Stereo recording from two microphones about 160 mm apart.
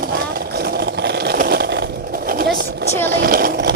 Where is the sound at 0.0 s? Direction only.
75° right (ahead or behind); by 2.9 s 90° right.